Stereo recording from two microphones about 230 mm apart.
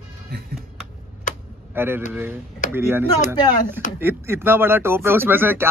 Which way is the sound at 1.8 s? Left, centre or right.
Centre.